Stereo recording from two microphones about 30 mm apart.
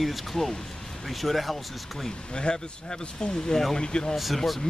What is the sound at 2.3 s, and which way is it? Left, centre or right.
Speech, left.